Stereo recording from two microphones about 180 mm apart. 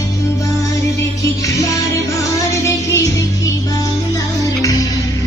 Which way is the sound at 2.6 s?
15° left (ahead or behind).